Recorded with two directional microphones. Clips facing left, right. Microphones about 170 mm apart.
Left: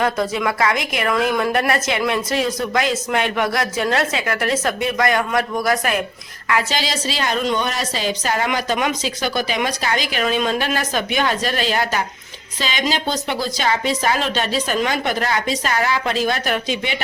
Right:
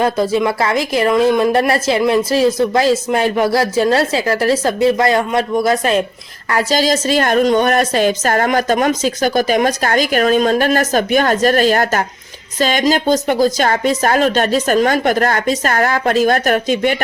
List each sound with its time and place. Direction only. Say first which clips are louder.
0.0 s a woman's voice: right 5 dB; 30° right (ahead or behind)
6.5 s a woman's voice: right 6 dB; 40° right (ahead or behind)